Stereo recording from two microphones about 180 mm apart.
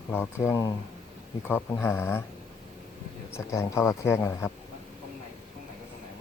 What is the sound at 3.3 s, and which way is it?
Speech, 15° left (ahead or behind).